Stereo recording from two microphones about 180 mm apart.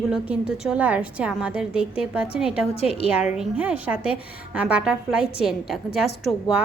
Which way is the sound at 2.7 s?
35° left (ahead or behind).